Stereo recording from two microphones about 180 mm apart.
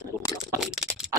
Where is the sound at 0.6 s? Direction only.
Centre (ahead or behind).